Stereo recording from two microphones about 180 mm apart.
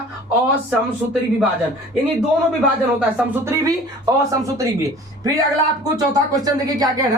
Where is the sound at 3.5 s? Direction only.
20° right (ahead or behind).